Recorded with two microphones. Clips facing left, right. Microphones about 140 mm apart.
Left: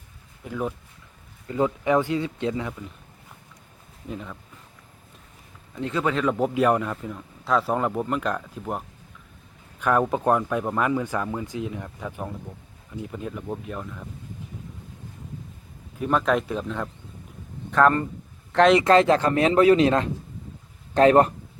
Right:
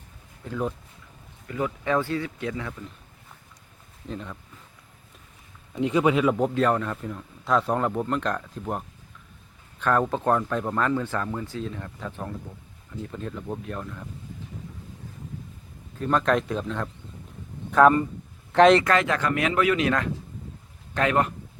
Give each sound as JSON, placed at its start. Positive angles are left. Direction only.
{"t": 0.4, "sound": "speech", "side_deg": 5}
{"t": 1.5, "sound": "speech", "side_deg": 25}
{"t": 1.8, "sound": "speech", "side_deg": 15}
{"t": 4.1, "sound": "speech", "side_deg": 5}
{"t": 5.7, "sound": "a man's voice", "side_deg": -15}
{"t": 6.3, "sound": "speech", "side_deg": 5}
{"t": 9.8, "sound": "speech", "side_deg": 10}
{"t": 16.0, "sound": "speech", "side_deg": 5}
{"t": 18.9, "sound": "speech", "side_deg": 30}